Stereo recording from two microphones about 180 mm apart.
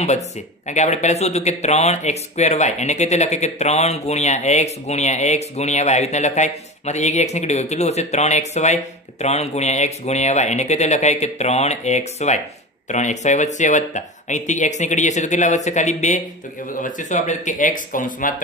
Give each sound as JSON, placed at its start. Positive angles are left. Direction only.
{"t": 0.7, "sound": "speech", "side_deg": 40}